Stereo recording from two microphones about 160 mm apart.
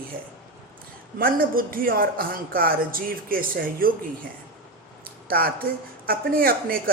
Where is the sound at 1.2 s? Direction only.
65° right (ahead or behind).